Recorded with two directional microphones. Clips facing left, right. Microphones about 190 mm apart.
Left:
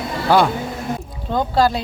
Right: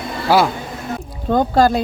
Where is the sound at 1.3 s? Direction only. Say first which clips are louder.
Right 5 dB; 50° right (ahead or behind).